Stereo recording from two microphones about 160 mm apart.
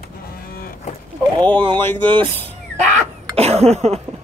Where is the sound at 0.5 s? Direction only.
65° left (ahead or behind).